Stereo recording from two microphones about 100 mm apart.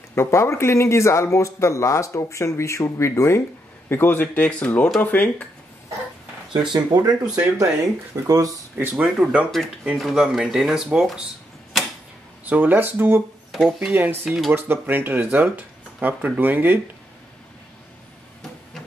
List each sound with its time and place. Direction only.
0.1 s speech: 25° left (ahead or behind)
6.5 s speech: 50° right (ahead or behind)
8.7 s speech: 20° right (ahead or behind)
12.4 s speech: 15° right (ahead or behind)
13.5 s speech: centre (ahead or behind)
14.5 s speech: 20° right (ahead or behind)